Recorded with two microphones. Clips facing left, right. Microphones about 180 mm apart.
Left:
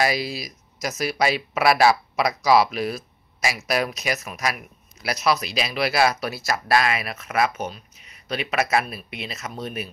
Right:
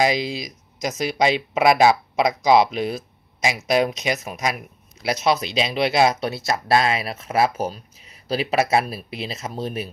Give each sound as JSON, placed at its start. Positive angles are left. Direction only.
{"t": 0.0, "sound": "speech", "side_deg": -20}